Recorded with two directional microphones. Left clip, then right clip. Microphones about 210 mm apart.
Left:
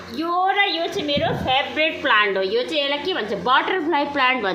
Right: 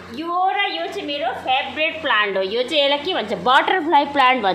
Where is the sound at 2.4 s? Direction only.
15° right (ahead or behind).